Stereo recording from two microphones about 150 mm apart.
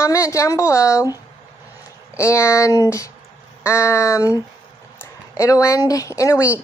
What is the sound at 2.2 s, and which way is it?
A woman's voice, 20° left (ahead or behind).